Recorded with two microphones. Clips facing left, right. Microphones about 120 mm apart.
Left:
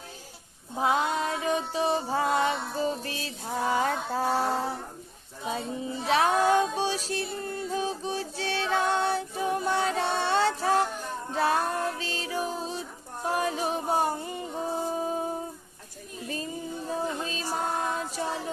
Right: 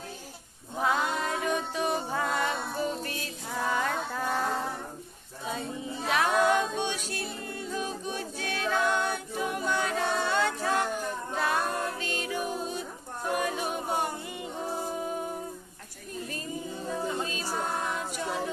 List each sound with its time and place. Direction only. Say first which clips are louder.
0.7 s music: left 2 dB; 25° left (ahead or behind)
6.0 s music: left 2 dB; 30° left (ahead or behind)
15.0 s humming: left 3 dB; 30° left (ahead or behind)
16.9 s music: left 1 dB; 30° left (ahead or behind)